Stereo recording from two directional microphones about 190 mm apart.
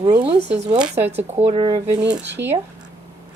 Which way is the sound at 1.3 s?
30° right (ahead or behind).